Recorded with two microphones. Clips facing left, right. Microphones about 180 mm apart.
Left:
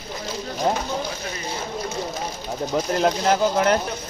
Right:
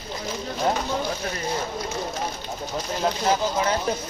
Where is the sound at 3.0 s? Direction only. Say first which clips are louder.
Left 2 dB; 65° left (ahead or behind).